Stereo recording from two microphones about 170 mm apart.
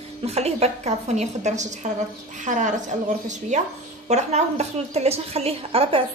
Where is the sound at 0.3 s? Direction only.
40° right (ahead or behind).